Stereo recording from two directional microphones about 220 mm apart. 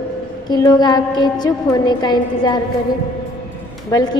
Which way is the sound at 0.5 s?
20° left (ahead or behind).